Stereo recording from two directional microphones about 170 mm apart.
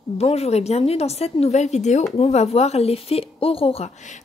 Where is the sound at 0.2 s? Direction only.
35° left (ahead or behind).